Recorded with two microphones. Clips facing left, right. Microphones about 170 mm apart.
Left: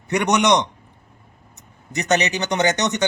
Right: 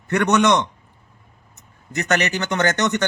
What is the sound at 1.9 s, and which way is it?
Speech, 20° left (ahead or behind).